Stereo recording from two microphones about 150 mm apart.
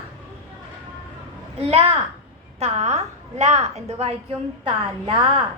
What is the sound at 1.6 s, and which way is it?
A woman's voice, 40° right (ahead or behind).